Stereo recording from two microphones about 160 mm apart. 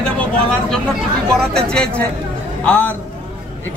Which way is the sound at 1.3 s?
5° left (ahead or behind).